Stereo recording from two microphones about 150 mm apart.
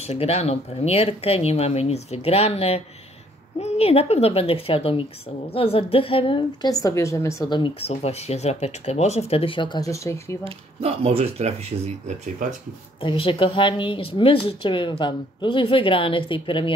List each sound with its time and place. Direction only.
0.0 s a woman's voice: 45° left (ahead or behind); by 7.4 s 20° left (ahead or behind)
7.4 s a woman's voice: 30° left (ahead or behind)
7.9 s speech: 45° left (ahead or behind); by 10.4 s 20° left (ahead or behind)
10.4 s speech: 40° right (ahead or behind)
13.0 s a woman's voice: 35° left (ahead or behind)